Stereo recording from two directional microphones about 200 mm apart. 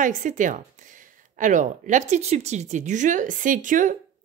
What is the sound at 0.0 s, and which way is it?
A woman's voice, 40° right (ahead or behind).